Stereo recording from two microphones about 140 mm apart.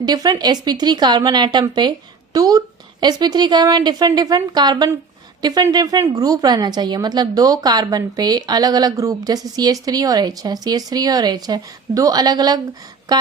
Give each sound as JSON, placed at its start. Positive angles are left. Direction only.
{"t": 0.0, "sound": "a woman's voice", "side_deg": -30}